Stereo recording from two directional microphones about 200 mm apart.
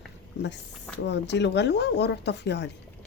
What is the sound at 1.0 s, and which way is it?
A woman's voice, 60° left (ahead or behind).